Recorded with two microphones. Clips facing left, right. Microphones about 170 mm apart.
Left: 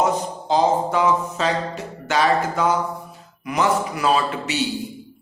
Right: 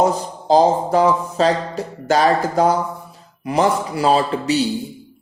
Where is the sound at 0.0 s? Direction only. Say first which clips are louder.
Right 3 dB; 35° right (ahead or behind).